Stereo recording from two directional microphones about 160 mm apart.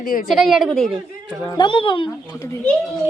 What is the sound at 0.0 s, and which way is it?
Speech, 60° left (ahead or behind).